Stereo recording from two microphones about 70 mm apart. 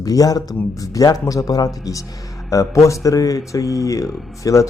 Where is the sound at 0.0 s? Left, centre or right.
Left.